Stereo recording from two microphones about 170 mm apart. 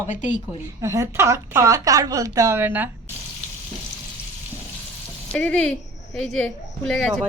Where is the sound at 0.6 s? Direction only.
15° right (ahead or behind).